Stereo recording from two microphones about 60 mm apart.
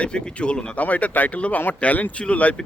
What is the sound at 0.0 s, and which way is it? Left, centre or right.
Speech, centre.